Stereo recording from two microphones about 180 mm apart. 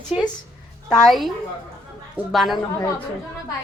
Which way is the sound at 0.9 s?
Centre (ahead or behind).